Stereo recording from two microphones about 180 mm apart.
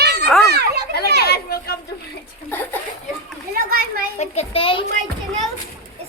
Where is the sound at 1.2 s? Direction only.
60° left (ahead or behind).